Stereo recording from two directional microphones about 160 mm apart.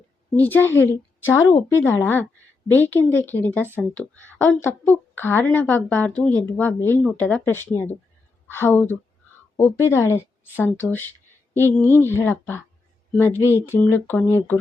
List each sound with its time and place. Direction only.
0.3 s a woman's voice: 10° left (ahead or behind)